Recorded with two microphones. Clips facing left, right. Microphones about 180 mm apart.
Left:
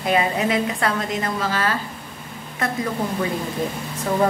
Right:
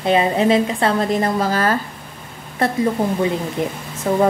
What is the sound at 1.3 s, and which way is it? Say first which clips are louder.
Speech: right 5 dB; 40° right (ahead or behind).